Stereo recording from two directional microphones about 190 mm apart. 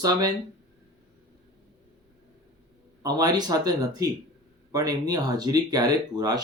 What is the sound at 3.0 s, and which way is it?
Speech, 20° right (ahead or behind).